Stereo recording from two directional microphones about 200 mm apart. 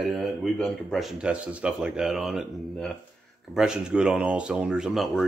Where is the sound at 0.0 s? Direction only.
Centre (ahead or behind).